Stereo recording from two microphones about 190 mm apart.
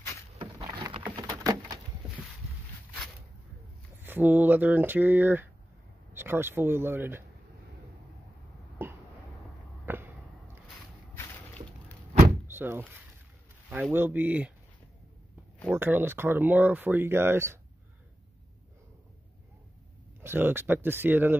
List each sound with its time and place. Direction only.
0.6 s a sound: 20° right (ahead or behind)
4.0 s speech: 10° right (ahead or behind)
8.8 s a sound: 10° right (ahead or behind)
12.4 s door: 10° right (ahead or behind)
13.9 s speech: 10° right (ahead or behind)
15.7 s speech: 10° right (ahead or behind)
20.2 s speech: 10° right (ahead or behind)